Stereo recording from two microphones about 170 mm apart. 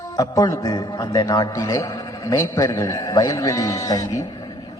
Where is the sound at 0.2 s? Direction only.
20° left (ahead or behind).